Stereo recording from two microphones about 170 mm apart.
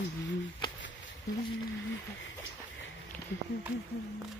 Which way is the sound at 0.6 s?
25° left (ahead or behind).